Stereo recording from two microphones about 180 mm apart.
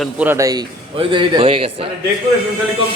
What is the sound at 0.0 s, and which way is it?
A man's voice, 10° right (ahead or behind).